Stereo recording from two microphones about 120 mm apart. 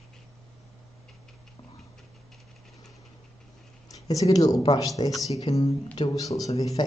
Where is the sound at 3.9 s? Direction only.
30° left (ahead or behind).